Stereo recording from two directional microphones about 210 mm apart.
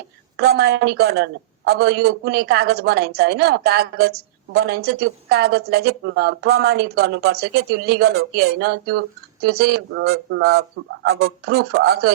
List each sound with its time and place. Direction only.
0.3 s speech: 50° right (ahead or behind)